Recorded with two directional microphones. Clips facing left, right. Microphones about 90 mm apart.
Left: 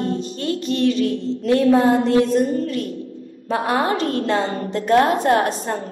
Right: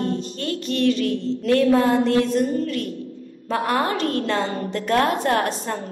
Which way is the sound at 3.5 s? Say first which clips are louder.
Left 2 dB; 25° left (ahead or behind).